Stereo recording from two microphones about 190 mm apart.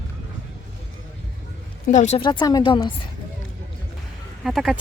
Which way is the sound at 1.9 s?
40° left (ahead or behind).